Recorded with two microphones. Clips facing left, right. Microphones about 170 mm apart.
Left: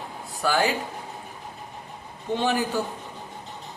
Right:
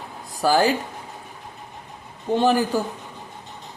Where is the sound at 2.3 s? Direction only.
40° right (ahead or behind).